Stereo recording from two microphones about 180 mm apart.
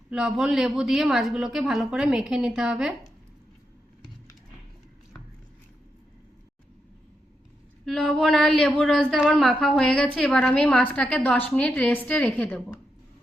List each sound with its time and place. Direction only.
0.1 s speech: 5° right (ahead or behind)
7.9 s a woman's voice: 5° left (ahead or behind)